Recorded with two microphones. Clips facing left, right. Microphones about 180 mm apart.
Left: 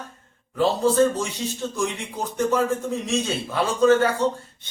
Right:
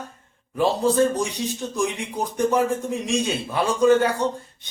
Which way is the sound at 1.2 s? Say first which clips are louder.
Right 2 dB; 15° right (ahead or behind).